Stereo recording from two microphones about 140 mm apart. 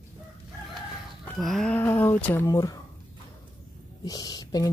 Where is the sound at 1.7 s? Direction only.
15° left (ahead or behind).